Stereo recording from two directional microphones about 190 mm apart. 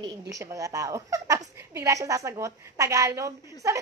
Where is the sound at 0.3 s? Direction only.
15° right (ahead or behind).